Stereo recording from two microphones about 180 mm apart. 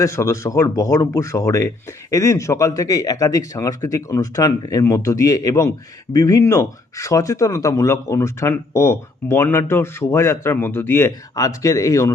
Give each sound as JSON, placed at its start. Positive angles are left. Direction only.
{"t": 0.0, "sound": "speech", "side_deg": 15}